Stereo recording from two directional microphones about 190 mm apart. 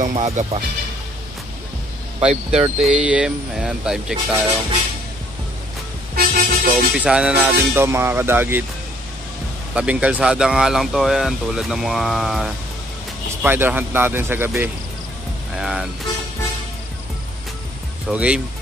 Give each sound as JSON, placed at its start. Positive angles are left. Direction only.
{"t": 0.0, "sound": "speech", "side_deg": -40}
{"t": 2.1, "sound": "speech", "side_deg": -30}
{"t": 2.8, "sound": "speech", "side_deg": -5}
{"t": 6.1, "sound": "speech", "side_deg": -50}
{"t": 7.0, "sound": "speech", "side_deg": -5}
{"t": 9.8, "sound": "speech", "side_deg": -5}
{"t": 18.0, "sound": "speech", "side_deg": -5}